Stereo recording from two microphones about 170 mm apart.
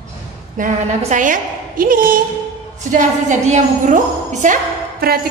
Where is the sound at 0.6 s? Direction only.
50° right (ahead or behind).